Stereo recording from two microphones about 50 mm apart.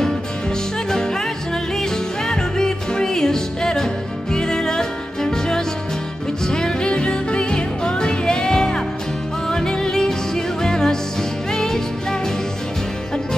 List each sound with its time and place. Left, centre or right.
0.8 s music: centre